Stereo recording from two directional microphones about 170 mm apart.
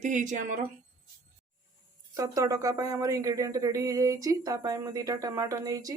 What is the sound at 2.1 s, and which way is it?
Speech, 20° right (ahead or behind).